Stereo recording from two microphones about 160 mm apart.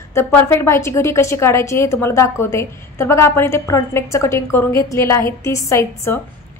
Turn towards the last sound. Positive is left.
turn(degrees=15)  # may be behind; listen again after turning